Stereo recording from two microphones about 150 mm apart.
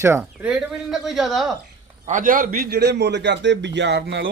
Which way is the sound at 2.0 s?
60° right (ahead or behind).